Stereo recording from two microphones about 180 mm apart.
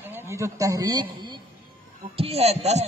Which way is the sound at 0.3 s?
15° right (ahead or behind).